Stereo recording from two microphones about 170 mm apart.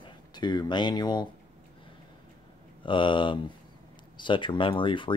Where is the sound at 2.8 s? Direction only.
30° left (ahead or behind).